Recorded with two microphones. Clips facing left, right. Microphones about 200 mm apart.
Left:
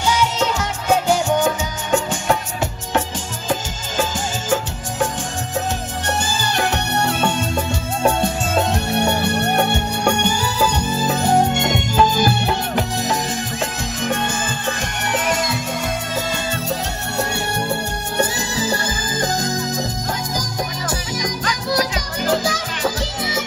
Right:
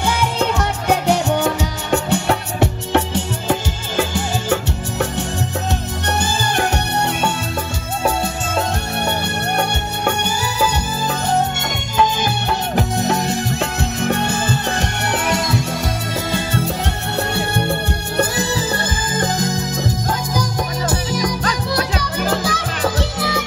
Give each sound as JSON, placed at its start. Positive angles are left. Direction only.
{"t": 0.0, "sound": "music", "side_deg": -55}
{"t": 12.7, "sound": "music", "side_deg": -60}
{"t": 18.3, "sound": "music", "side_deg": -60}
{"t": 20.9, "sound": "music", "side_deg": -55}